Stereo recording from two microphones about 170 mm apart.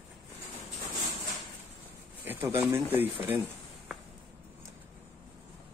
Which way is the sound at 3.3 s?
10° right (ahead or behind).